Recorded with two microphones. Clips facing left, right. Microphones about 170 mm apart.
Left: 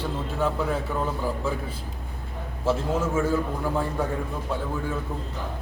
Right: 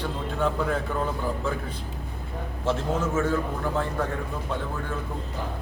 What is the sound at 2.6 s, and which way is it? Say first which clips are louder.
A man's voice: left 2 dB; 10° left (ahead or behind).